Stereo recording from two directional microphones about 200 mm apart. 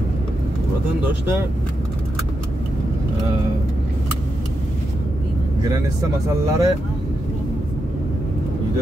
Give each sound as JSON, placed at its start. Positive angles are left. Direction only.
{"t": 6.2, "sound": "speech", "side_deg": -15}